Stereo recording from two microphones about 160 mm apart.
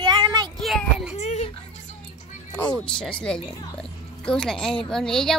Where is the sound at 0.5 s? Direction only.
Centre (ahead or behind).